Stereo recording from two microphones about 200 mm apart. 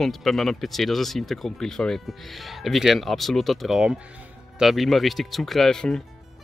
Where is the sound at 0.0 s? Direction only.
Centre (ahead or behind).